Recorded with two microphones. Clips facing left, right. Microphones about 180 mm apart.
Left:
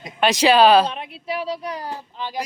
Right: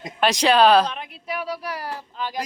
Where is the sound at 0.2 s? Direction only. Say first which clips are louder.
Left 2 dB; centre (ahead or behind).